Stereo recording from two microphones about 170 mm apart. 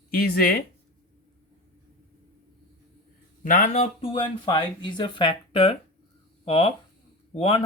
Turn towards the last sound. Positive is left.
turn(degrees=35)  # may be behind; listen again after turning